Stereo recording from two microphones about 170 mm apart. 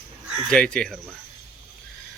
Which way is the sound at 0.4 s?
5° left (ahead or behind).